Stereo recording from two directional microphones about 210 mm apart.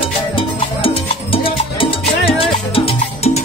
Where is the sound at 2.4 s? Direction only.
25° left (ahead or behind).